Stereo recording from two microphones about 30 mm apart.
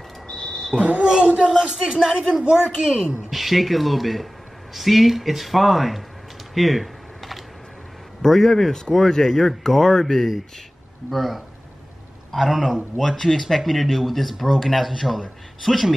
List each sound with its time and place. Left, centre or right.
0.3 s a sound: left
0.7 s a woman's voice: right
2.1 s a woman's voice: right
3.3 s speech: centre
6.5 s typing: centre
8.2 s speech: centre